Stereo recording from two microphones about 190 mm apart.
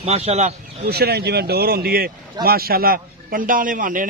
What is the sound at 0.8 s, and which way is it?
A man's voice, 55° right (ahead or behind).